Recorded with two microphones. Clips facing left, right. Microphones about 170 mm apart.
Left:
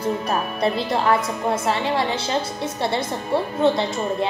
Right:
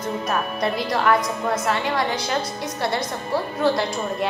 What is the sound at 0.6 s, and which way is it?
A woman's voice, 30° left (ahead or behind).